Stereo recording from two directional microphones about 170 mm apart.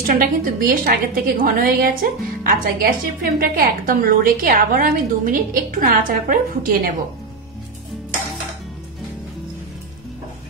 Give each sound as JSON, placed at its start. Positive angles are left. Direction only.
{"t": 0.0, "sound": "a woman's voice", "side_deg": -55}